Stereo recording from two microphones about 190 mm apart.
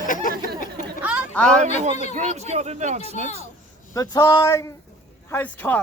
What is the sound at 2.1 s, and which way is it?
Speech, 35° right (ahead or behind).